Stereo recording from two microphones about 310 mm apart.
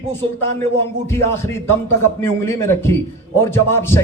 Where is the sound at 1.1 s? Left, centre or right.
Centre.